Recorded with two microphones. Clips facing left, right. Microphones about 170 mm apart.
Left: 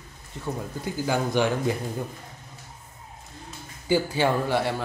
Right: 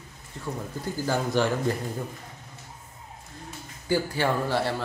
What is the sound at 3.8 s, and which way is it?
Speech, 20° left (ahead or behind).